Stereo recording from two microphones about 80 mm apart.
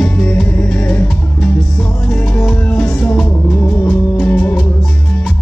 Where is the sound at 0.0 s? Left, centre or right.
Centre.